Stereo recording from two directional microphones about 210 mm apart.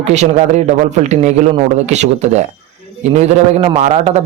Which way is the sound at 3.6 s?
30° right (ahead or behind).